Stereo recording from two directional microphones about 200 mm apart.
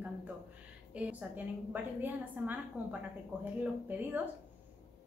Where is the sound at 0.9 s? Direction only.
10° right (ahead or behind).